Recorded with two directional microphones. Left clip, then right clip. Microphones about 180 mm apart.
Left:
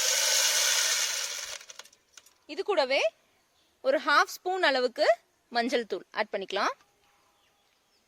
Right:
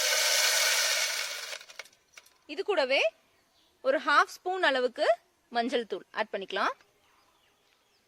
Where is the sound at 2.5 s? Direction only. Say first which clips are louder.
Left 1 dB; 30° left (ahead or behind).